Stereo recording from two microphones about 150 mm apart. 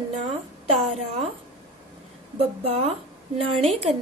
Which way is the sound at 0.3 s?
40° right (ahead or behind).